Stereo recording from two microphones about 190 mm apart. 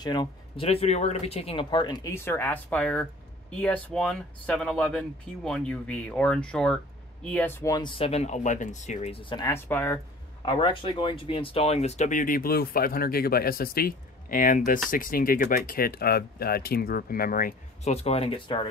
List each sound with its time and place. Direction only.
0.0 s speech: 25° left (ahead or behind)
9.5 s speech: 10° left (ahead or behind)
10.4 s speech: 25° left (ahead or behind)